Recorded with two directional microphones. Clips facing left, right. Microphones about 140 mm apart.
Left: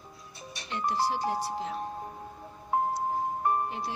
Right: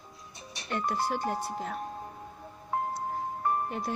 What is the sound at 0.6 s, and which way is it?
Speech, 55° right (ahead or behind).